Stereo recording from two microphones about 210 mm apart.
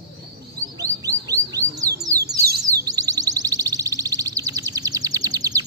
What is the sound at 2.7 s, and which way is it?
Music, 15° right (ahead or behind).